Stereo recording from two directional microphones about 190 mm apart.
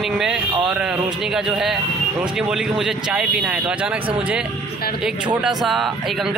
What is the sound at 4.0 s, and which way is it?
Speech, 25° right (ahead or behind).